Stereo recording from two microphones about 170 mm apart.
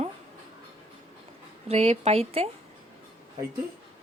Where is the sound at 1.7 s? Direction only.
35° right (ahead or behind).